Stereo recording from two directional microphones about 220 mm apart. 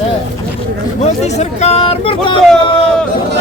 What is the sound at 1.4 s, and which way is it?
Speech, 30° left (ahead or behind).